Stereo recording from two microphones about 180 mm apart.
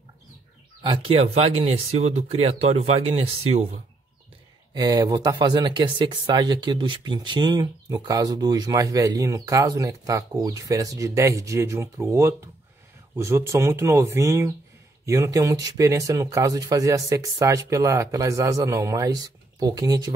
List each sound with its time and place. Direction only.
0.8 s speech: 30° right (ahead or behind)
4.7 s speech: 20° right (ahead or behind)